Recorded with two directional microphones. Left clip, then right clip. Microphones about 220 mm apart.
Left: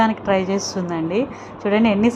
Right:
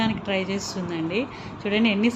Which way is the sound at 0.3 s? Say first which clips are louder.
Left 6 dB; 35° left (ahead or behind).